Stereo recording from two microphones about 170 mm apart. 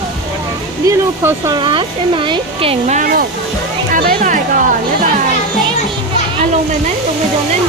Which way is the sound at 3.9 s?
55° right (ahead or behind).